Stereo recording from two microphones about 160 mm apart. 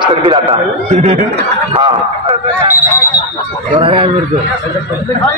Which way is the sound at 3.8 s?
35° right (ahead or behind).